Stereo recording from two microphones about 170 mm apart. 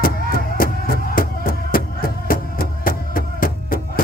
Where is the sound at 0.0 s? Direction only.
60° left (ahead or behind).